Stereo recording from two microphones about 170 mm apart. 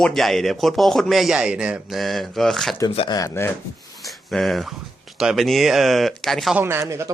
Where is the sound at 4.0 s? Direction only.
Centre (ahead or behind).